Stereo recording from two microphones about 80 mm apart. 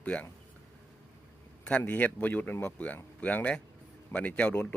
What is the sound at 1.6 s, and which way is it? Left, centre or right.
A man's voice, centre.